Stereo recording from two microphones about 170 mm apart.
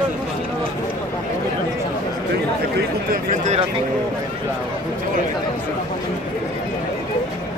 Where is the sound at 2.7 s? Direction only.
50° right (ahead or behind).